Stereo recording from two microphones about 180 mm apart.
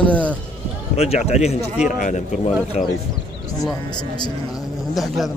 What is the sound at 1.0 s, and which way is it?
A man's voice, 35° left (ahead or behind).